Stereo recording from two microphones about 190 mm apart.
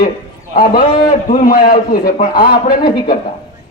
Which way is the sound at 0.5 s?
50° left (ahead or behind).